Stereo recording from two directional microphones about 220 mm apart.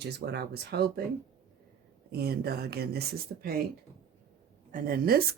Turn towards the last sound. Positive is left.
turn(degrees=-40)  # may be behind; listen again after turning